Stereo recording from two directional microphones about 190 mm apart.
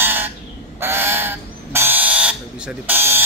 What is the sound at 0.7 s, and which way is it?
Bird, 10° right (ahead or behind).